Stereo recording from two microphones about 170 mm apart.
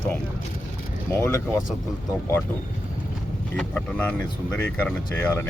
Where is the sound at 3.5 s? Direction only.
10° left (ahead or behind).